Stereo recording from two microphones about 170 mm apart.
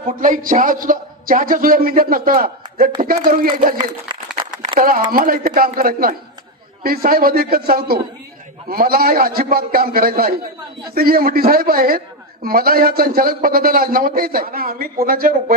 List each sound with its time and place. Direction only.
0.2 s a woman's voice: 50° right (ahead or behind)
4.8 s a woman's voice: 55° right (ahead or behind)